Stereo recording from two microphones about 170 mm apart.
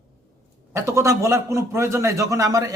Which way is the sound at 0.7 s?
15° right (ahead or behind).